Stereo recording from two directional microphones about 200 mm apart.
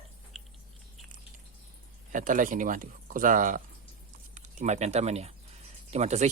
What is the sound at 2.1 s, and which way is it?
Speech, 40° right (ahead or behind).